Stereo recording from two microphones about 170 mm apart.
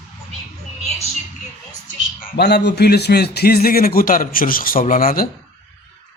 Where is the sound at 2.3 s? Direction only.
75° left (ahead or behind); by 5.3 s 60° left (ahead or behind).